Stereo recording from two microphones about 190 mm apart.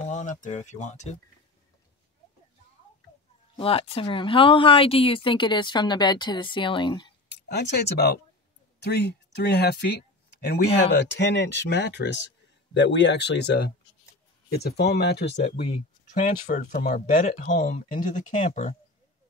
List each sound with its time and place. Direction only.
0.1 s speech: 40° left (ahead or behind)
3.5 s speech: 30° left (ahead or behind)
7.2 s speech: 60° left (ahead or behind)
10.9 s speech: 65° left (ahead or behind)
16.1 s speech: 40° left (ahead or behind)
17.1 s speech: 30° left (ahead or behind)
17.4 s speech: 45° left (ahead or behind)